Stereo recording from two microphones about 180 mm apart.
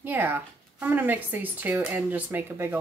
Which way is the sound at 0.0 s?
10° right (ahead or behind).